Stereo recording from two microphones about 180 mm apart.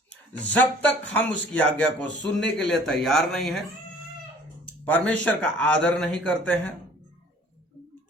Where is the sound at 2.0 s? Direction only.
80° left.